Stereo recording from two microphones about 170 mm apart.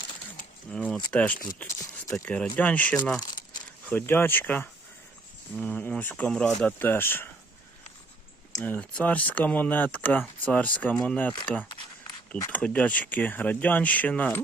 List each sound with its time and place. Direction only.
0.7 s speech: 5° left (ahead or behind)
1.6 s a sound: 20° left (ahead or behind)
2.1 s speech: 5° left (ahead or behind)
8.5 s speech: 10° left (ahead or behind)
12.5 s speech: 10° left (ahead or behind)